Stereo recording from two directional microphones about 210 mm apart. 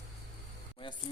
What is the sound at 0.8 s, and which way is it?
Speech, 25° left (ahead or behind).